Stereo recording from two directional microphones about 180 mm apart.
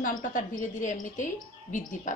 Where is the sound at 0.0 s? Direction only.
50° left (ahead or behind).